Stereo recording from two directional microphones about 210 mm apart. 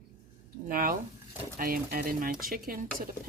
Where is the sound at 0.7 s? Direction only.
40° right (ahead or behind).